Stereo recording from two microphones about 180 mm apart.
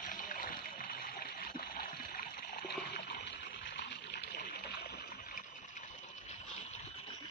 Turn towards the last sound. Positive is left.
turn(degrees=55)  # may be behind; listen again after turning